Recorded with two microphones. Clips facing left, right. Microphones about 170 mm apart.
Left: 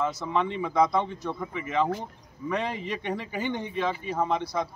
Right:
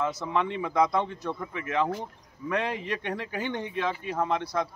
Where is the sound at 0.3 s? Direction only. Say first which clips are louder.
Left 1 dB; 5° left (ahead or behind).